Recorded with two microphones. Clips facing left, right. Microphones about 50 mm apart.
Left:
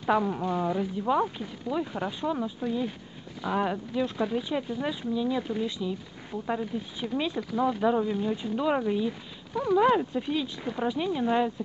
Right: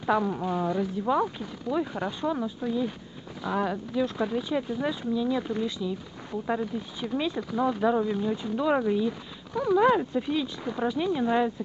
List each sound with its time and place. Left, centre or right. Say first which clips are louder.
0.2 s speech: even; centre
8.2 s speech: right 1 dB; centre